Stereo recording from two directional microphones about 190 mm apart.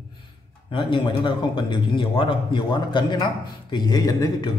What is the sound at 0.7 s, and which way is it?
A man's voice, 25° left (ahead or behind).